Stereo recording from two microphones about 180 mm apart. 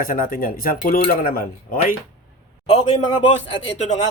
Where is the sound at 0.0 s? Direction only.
50° left (ahead or behind).